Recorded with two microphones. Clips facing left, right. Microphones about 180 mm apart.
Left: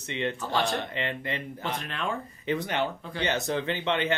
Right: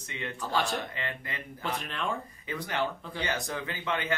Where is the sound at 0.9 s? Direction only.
25° left (ahead or behind).